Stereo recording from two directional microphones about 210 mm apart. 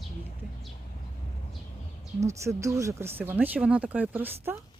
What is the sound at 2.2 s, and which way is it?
Speech, 15° right (ahead or behind).